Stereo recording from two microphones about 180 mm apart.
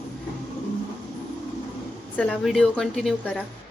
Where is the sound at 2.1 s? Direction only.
5° left (ahead or behind).